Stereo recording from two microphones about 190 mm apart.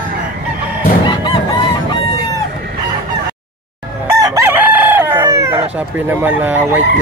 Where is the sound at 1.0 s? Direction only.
25° left (ahead or behind).